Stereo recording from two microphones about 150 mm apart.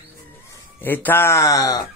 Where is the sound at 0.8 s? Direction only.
15° left (ahead or behind).